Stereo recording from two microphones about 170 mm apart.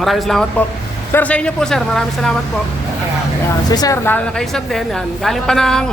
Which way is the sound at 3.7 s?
20° left (ahead or behind).